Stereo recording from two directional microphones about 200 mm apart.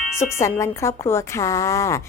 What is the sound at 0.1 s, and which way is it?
A woman's voice, 15° left (ahead or behind).